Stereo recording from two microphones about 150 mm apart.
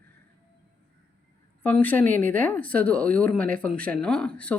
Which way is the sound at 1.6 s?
10° left (ahead or behind).